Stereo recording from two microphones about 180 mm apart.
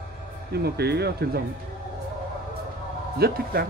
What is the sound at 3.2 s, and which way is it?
Speech, 60° right (ahead or behind).